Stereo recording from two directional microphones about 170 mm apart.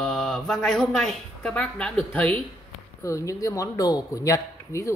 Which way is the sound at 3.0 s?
20° left (ahead or behind).